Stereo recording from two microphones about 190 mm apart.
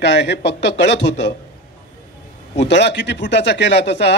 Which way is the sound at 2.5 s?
65° left (ahead or behind).